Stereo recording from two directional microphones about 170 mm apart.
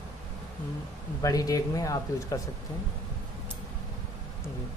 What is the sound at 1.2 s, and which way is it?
Speech, 20° left (ahead or behind).